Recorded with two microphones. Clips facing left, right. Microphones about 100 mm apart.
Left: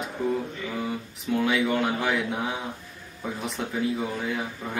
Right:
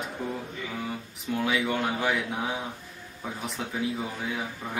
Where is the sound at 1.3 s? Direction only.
Centre (ahead or behind).